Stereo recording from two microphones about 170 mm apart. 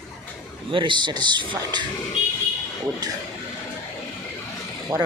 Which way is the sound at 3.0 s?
25° right (ahead or behind).